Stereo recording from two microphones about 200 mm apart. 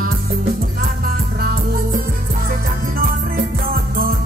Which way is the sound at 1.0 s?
50° right (ahead or behind).